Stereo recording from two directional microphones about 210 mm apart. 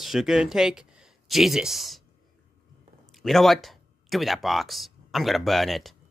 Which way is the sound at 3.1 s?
Centre (ahead or behind).